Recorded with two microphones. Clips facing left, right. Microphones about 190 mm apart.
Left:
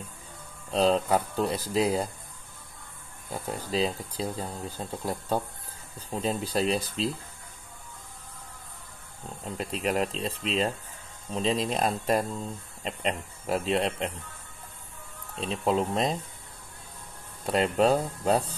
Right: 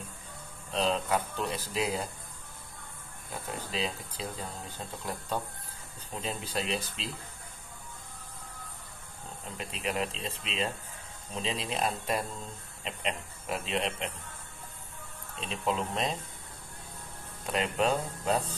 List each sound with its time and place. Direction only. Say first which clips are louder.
0.7 s speech: left 6 dB; 35° left (ahead or behind)
3.3 s speech: left 5 dB; 40° left (ahead or behind)
9.6 s speech: left 5 dB; 40° left (ahead or behind)
15.3 s speech: left 6 dB; 40° left (ahead or behind)
17.5 s speech: left 6 dB; 35° left (ahead or behind)